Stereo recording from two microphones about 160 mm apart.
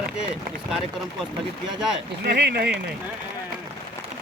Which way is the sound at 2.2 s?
90° right.